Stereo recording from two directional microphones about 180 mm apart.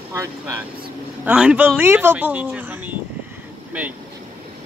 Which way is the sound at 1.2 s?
5° right (ahead or behind).